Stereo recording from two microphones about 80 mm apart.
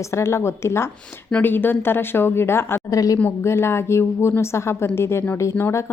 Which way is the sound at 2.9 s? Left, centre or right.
Left.